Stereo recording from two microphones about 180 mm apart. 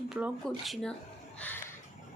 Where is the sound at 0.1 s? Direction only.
Centre (ahead or behind).